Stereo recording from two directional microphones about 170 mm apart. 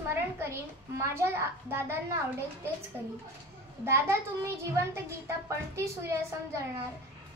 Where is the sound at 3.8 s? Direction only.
15° right (ahead or behind).